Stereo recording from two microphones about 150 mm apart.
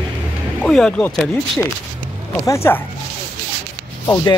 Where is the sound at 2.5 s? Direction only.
15° left (ahead or behind).